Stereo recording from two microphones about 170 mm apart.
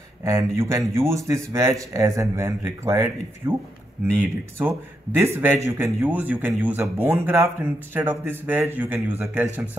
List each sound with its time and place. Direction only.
0.2 s speech: 15° right (ahead or behind)